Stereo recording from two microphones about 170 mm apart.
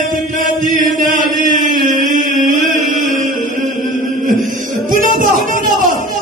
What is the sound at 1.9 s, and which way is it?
Chant, 50° right (ahead or behind).